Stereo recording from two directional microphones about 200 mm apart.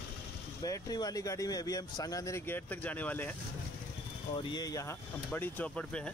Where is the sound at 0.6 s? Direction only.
20° left (ahead or behind).